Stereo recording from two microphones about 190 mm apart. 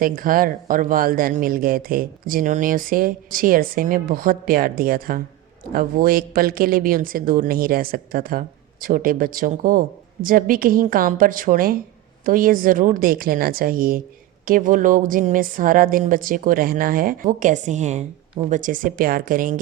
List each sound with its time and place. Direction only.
0.0 s speech: 50° right (ahead or behind)